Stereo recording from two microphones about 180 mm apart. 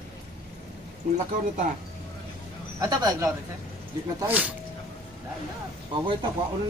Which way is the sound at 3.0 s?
20° right (ahead or behind).